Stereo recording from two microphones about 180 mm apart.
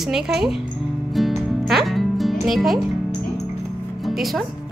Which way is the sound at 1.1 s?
Centre (ahead or behind).